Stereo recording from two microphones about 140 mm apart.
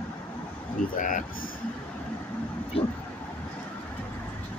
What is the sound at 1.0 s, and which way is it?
Speech, 70° left (ahead or behind).